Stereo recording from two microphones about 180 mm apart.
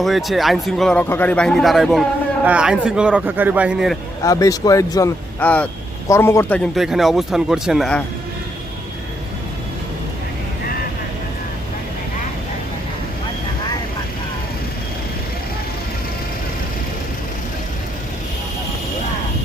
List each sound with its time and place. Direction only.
0.0 s speech: centre (ahead or behind)
4.2 s speech: 20° left (ahead or behind)
6.7 s speech: centre (ahead or behind)